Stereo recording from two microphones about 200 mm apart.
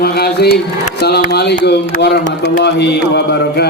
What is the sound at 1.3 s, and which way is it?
Speech, 55° left (ahead or behind).